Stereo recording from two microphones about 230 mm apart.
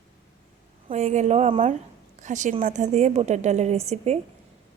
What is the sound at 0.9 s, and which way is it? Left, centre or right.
A woman's voice, right.